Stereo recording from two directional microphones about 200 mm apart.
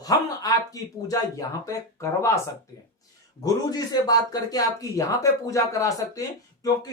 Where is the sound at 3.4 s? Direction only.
20° left (ahead or behind).